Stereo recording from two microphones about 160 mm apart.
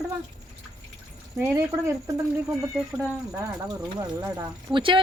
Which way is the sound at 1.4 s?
15° right (ahead or behind).